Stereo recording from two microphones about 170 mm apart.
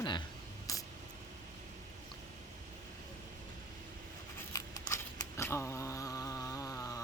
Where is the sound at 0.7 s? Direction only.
20° left (ahead or behind).